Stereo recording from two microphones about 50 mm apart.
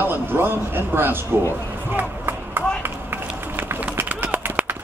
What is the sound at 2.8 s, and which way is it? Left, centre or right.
Run, right.